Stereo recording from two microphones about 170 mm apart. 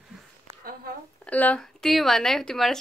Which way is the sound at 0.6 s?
60° right (ahead or behind).